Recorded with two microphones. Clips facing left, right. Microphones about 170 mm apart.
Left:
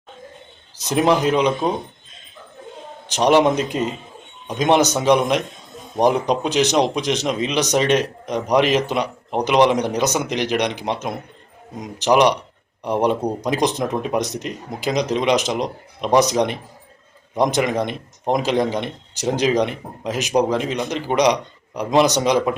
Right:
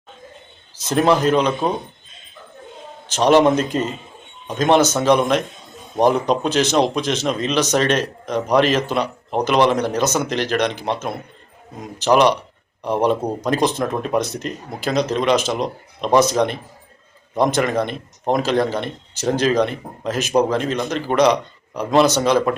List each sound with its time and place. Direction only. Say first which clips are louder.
0.8 s speech: right 1 dB; 15° left (ahead or behind)
3.1 s speech: right 1 dB; 15° left (ahead or behind)